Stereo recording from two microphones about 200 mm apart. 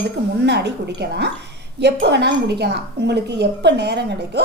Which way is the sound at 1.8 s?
55° right (ahead or behind).